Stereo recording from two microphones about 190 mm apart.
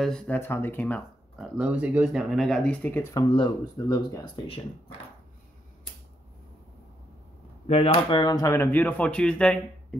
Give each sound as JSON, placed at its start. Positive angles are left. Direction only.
{"t": 0.0, "sound": "speech", "side_deg": 5}
{"t": 1.6, "sound": "speech", "side_deg": -5}
{"t": 3.3, "sound": "speech", "side_deg": 25}
{"t": 7.6, "sound": "speech", "side_deg": 30}